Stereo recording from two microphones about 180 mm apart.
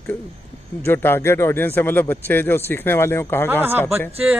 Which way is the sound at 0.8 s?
10° left (ahead or behind).